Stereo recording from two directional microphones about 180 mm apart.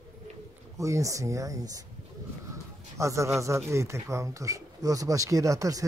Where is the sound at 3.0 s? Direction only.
15° right (ahead or behind).